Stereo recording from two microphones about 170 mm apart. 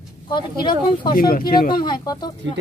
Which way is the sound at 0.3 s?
25° left (ahead or behind).